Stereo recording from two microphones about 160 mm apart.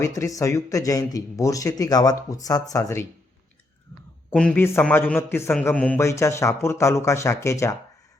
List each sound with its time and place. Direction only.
0.0 s speech: 20° left (ahead or behind)
4.3 s a man's voice: 10° left (ahead or behind)